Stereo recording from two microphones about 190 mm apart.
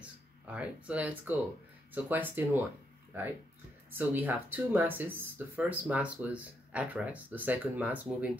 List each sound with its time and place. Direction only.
0.5 s speech: 5° right (ahead or behind)
3.9 s speech: 10° right (ahead or behind)